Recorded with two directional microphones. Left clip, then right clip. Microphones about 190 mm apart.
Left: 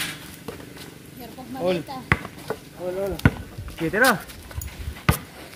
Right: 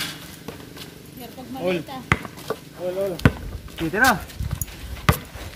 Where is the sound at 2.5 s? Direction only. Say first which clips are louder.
Right 2 dB; 10° right (ahead or behind).